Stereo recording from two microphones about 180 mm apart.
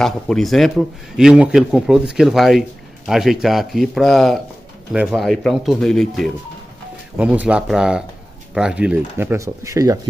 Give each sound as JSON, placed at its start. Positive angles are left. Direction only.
{"t": 0.0, "sound": "a man's voice", "side_deg": 0}